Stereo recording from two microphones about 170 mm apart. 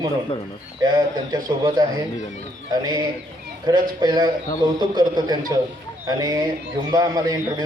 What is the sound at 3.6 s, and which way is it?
A man's voice, 25° right (ahead or behind).